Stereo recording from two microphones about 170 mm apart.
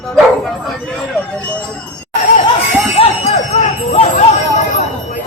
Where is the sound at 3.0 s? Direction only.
40° left (ahead or behind).